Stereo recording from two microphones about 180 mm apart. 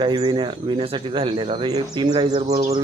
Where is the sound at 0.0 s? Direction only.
25° right (ahead or behind).